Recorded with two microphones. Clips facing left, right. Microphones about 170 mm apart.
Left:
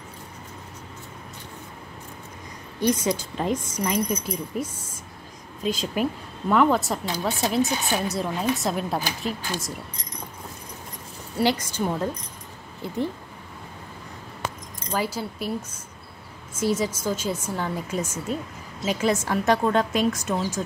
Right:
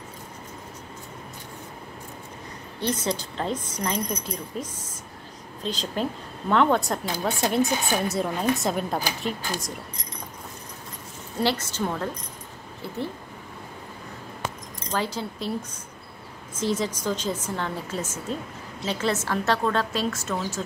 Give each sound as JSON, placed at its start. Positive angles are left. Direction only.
{"t": 2.8, "sound": "a woman's voice", "side_deg": 10}
{"t": 11.3, "sound": "a woman's voice", "side_deg": 15}
{"t": 14.9, "sound": "a woman's voice", "side_deg": 10}
{"t": 16.5, "sound": "a woman's voice", "side_deg": 10}